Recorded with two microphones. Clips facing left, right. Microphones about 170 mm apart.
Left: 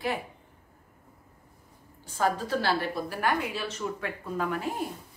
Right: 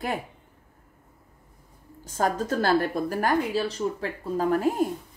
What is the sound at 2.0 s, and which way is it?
A woman's voice, 45° right (ahead or behind).